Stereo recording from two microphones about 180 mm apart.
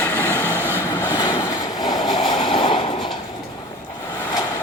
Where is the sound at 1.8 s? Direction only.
25° left (ahead or behind).